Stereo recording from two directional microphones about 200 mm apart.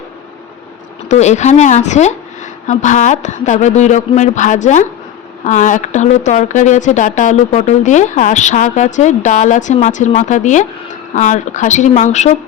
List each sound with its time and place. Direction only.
1.0 s speech: 35° left (ahead or behind)